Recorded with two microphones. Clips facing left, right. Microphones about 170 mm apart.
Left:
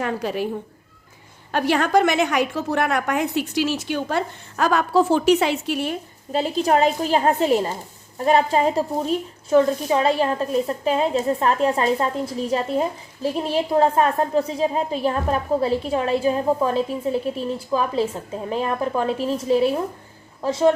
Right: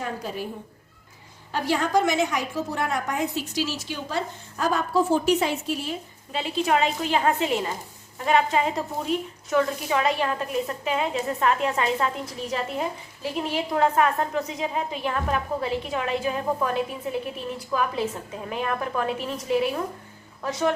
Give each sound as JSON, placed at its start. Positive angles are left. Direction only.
{"t": 0.0, "sound": "a woman's voice", "side_deg": 75}
{"t": 1.5, "sound": "a woman's voice", "side_deg": 65}
{"t": 6.3, "sound": "a woman's voice", "side_deg": 40}